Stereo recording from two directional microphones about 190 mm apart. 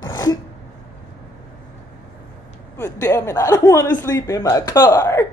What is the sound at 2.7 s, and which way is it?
Speech, 15° left (ahead or behind).